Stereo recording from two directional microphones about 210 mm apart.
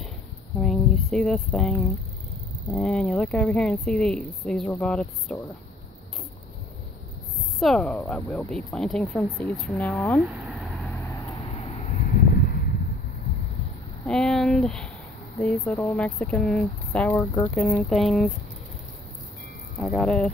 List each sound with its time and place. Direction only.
0.6 s a sound: centre (ahead or behind)
2.7 s speech: 5° left (ahead or behind)
7.5 s speech: centre (ahead or behind)
11.8 s a sound: 40° left (ahead or behind)
14.0 s speech: 5° left (ahead or behind)
19.8 s speech: centre (ahead or behind)